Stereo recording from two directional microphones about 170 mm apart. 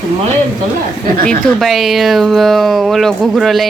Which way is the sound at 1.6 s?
Centre (ahead or behind).